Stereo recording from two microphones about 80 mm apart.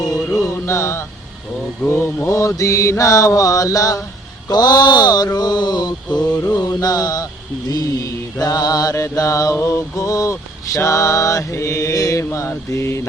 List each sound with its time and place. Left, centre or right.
0.3 s music: left
1.9 s mantra: left
4.4 s speech: left
6.1 s mantra: centre
6.4 s mantra: left
9.6 s mantra: left